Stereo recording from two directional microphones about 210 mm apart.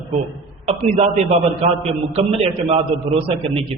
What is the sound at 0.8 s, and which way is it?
Speech, 35° right (ahead or behind).